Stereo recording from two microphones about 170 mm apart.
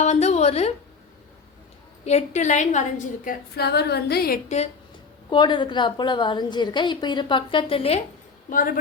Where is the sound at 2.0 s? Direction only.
40° left (ahead or behind).